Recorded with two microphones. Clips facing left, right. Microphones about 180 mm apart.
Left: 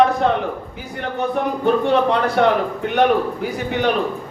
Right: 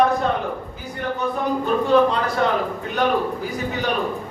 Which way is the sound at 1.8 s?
70° left (ahead or behind).